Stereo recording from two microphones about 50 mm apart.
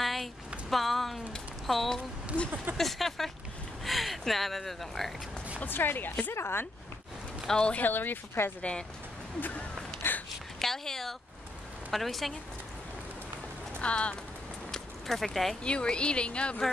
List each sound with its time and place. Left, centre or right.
0.0 s a sound: centre
0.7 s speech: centre
2.3 s speech: right
2.8 s speech: centre
5.6 s speech: left
7.5 s speech: centre
7.8 s speech: left
9.4 s speech: left
10.6 s speech: centre
13.7 s speech: left
14.7 s a sound: centre
15.6 s speech: left